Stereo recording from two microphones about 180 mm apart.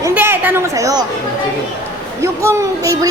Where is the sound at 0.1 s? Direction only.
10° right (ahead or behind).